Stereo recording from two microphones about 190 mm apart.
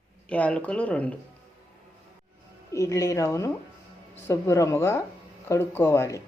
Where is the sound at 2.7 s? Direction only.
15° left (ahead or behind).